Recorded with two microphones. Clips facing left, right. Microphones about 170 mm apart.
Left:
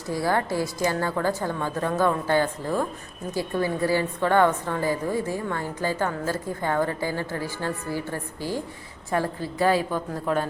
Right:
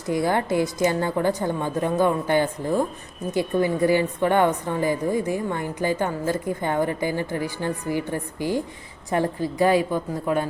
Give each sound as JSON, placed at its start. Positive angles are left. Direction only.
{"t": 0.1, "sound": "a woman's voice", "side_deg": -20}